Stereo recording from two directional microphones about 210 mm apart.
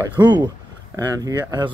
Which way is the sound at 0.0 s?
20° right (ahead or behind).